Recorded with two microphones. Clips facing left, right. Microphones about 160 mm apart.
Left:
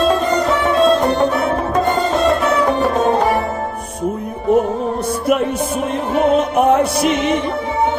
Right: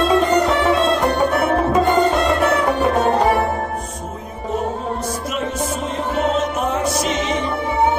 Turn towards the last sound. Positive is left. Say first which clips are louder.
# left 6 dB
turn(degrees=60)  # may be behind; listen again after turning